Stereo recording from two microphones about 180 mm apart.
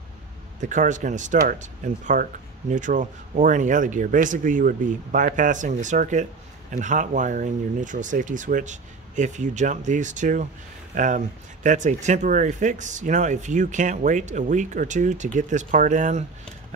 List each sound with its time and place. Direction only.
0.6 s speech: 45° right (ahead or behind)